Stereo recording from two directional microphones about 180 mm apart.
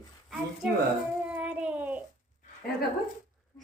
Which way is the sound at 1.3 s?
5° right (ahead or behind).